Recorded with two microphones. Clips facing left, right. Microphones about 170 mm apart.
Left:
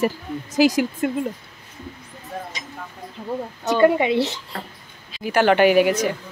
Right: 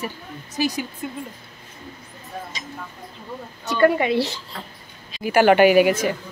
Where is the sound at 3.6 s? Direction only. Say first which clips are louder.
Left 1 dB; 20° left (ahead or behind).